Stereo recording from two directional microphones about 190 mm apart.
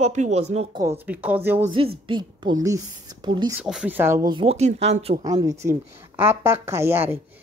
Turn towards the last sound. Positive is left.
turn(degrees=-10)  # may be behind; listen again after turning